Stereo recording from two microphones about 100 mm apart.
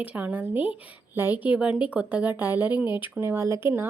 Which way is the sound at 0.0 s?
15° right (ahead or behind).